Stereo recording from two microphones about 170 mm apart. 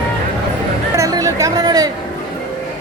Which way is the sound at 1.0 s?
20° right (ahead or behind).